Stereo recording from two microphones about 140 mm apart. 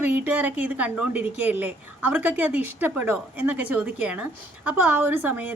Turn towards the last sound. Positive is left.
turn(degrees=-10)  # may be behind; listen again after turning